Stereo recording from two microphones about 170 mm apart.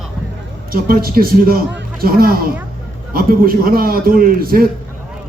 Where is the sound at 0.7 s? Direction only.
60° right (ahead or behind).